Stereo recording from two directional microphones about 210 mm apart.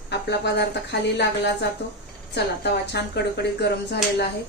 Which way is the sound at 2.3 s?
50° left (ahead or behind).